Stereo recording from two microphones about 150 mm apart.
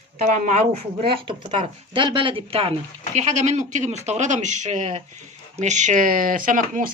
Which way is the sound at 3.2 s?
50° right (ahead or behind).